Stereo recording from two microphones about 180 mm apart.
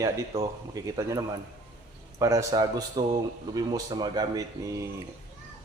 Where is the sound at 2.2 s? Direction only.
15° right (ahead or behind).